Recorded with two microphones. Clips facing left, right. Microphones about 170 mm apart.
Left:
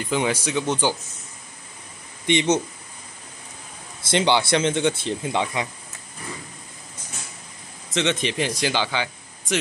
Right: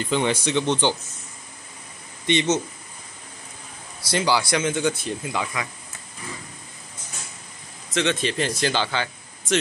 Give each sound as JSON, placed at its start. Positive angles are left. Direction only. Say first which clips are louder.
{"t": 0.0, "sound": "speech", "louder": "right 1 dB", "side_deg": 5}
{"t": 2.2, "sound": "speech", "louder": "left 1 dB", "side_deg": 15}
{"t": 4.1, "sound": "speech", "louder": "left 2 dB", "side_deg": 25}
{"t": 7.9, "sound": "speech", "louder": "even", "side_deg": 20}